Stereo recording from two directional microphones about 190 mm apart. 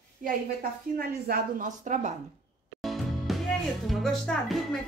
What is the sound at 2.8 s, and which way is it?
Music, centre (ahead or behind).